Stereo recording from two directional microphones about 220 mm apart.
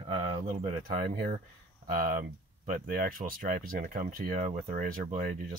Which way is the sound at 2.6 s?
35° right (ahead or behind).